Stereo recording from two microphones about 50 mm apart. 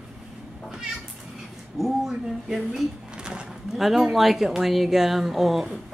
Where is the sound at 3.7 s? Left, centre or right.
Centre.